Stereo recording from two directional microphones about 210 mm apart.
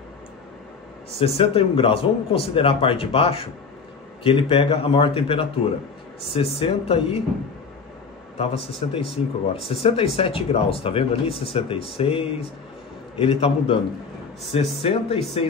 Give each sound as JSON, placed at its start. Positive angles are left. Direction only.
{"t": 1.1, "sound": "speech", "side_deg": 25}
{"t": 8.8, "sound": "speech", "side_deg": 30}